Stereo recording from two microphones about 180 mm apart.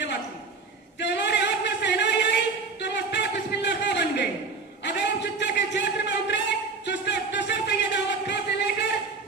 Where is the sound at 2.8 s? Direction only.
75° left (ahead or behind).